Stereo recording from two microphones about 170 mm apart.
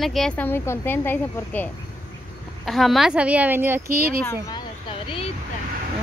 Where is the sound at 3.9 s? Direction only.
55° right (ahead or behind).